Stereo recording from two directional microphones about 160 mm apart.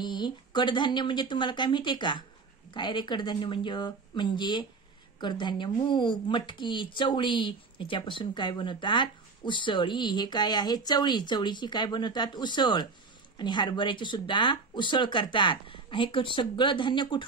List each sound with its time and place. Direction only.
0.0 s a woman's voice: 25° left (ahead or behind)